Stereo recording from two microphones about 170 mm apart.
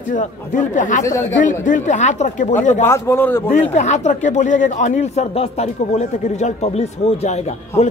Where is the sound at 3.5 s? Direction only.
45° left (ahead or behind).